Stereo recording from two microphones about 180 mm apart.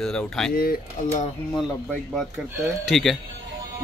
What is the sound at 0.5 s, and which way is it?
Speech, 55° left (ahead or behind).